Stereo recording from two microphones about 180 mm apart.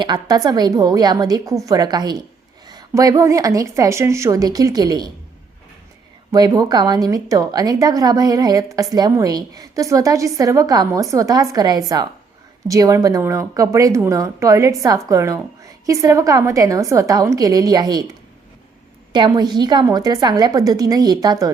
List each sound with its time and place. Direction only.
0.0 s a woman's voice: 20° right (ahead or behind)
6.3 s a woman's voice: 20° right (ahead or behind)
19.1 s a woman's voice: 25° right (ahead or behind)